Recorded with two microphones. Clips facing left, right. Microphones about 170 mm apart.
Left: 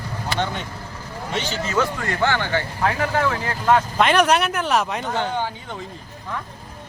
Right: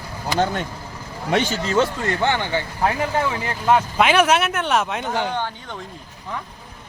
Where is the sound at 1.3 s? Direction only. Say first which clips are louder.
Right 7 dB; 60° right (ahead or behind).